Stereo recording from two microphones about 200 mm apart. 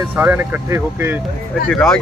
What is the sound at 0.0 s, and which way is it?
Speech, 10° right (ahead or behind).